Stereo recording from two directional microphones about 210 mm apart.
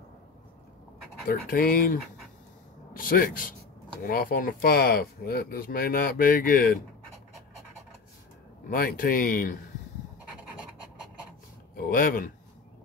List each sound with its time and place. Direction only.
1.5 s speech: 45° left (ahead or behind)
8.6 s speech: 45° left (ahead or behind)
11.7 s speech: 45° left (ahead or behind)